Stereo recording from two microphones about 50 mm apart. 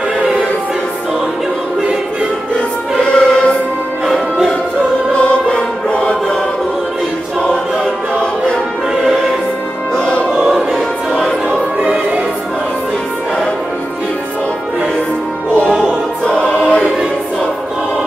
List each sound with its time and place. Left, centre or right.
3.0 s music: centre
4.0 s music: centre
5.3 s music: left